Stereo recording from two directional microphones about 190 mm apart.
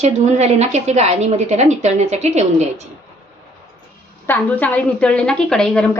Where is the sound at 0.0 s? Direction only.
35° right (ahead or behind).